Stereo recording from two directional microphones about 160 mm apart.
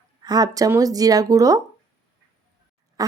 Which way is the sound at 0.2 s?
25° right (ahead or behind).